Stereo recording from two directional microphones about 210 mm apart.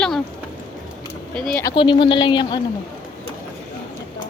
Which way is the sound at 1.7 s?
25° left (ahead or behind).